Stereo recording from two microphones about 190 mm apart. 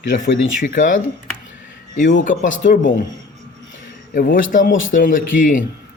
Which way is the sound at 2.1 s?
45° left (ahead or behind).